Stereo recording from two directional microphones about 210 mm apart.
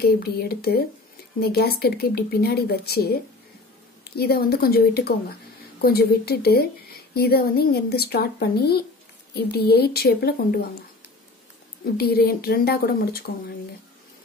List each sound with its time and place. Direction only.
0.0 s speech: 50° left (ahead or behind)
11.8 s speech: 45° left (ahead or behind)